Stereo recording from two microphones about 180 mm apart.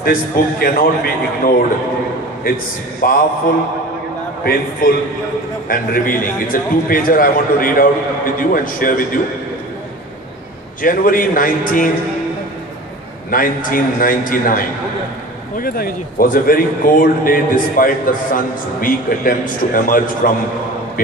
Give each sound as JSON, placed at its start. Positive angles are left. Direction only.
{"t": 0.0, "sound": "a man's voice", "side_deg": 55}
{"t": 4.8, "sound": "a man's voice", "side_deg": 50}
{"t": 10.8, "sound": "a man's voice", "side_deg": 50}
{"t": 13.3, "sound": "a man's voice", "side_deg": 50}